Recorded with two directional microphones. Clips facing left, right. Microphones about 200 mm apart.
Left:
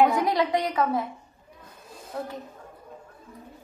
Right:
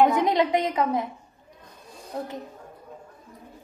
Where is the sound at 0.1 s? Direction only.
20° right (ahead or behind).